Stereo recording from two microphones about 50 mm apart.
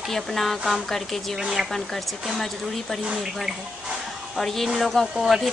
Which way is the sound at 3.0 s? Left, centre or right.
Centre.